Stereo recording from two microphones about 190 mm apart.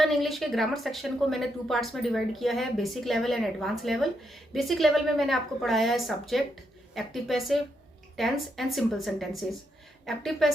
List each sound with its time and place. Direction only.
0.0 s a woman's voice: centre (ahead or behind)